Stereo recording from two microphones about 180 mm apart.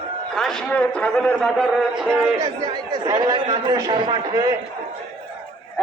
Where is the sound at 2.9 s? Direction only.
25° right (ahead or behind).